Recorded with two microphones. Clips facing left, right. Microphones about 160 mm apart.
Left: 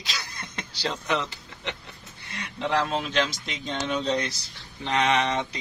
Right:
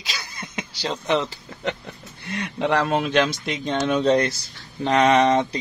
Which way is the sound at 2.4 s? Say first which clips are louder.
Right 4 dB; 65° right (ahead or behind).